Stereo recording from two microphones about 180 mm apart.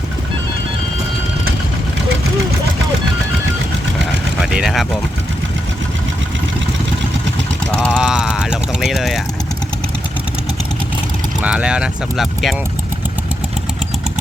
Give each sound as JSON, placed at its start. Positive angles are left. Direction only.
{"t": 4.4, "sound": "vehicle", "side_deg": -5}
{"t": 7.7, "sound": "a sound", "side_deg": 5}
{"t": 11.3, "sound": "speech", "side_deg": -5}